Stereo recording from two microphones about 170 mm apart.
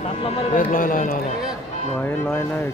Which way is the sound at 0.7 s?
55° left (ahead or behind).